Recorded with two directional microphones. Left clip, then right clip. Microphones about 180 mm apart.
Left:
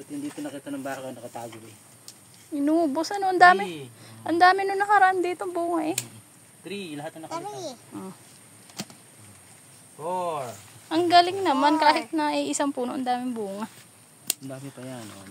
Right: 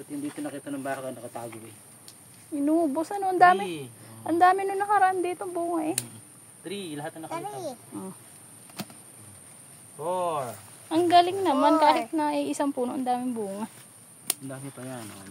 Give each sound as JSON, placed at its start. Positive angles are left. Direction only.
{"t": 0.4, "sound": "speech", "side_deg": 20}
{"t": 2.5, "sound": "a woman's voice", "side_deg": 5}
{"t": 7.2, "sound": "speech", "side_deg": -20}
{"t": 10.0, "sound": "a woman's voice", "side_deg": 5}
{"t": 14.5, "sound": "speech", "side_deg": 20}